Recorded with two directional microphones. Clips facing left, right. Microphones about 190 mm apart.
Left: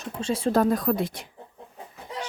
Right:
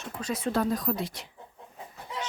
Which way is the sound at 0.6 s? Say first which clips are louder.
Left 5 dB; 60° left (ahead or behind).